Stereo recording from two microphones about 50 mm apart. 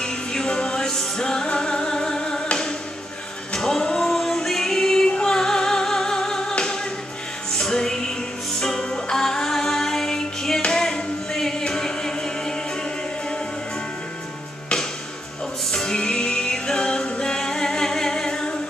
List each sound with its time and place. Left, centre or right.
0.0 s music: centre
10.6 s a capella: centre
15.7 s music: centre